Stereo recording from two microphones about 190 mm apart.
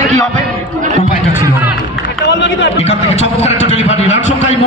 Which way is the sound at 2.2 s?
65° left (ahead or behind).